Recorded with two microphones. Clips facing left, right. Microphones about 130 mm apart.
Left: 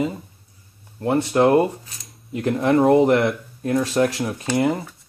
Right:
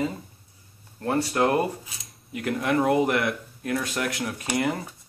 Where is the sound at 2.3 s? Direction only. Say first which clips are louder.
Left 6 dB; 30° left (ahead or behind).